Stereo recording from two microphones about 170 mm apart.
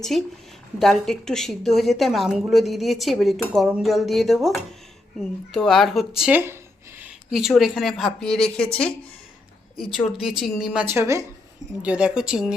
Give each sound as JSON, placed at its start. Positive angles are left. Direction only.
{"t": 0.8, "sound": "a woman's voice", "side_deg": 0}
{"t": 7.0, "sound": "a woman's voice", "side_deg": 0}
{"t": 10.8, "sound": "a woman's voice", "side_deg": -15}